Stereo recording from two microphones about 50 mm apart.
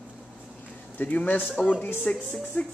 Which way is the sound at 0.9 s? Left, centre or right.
Left.